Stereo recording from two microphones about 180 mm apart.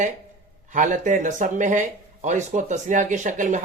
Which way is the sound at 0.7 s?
45° right (ahead or behind).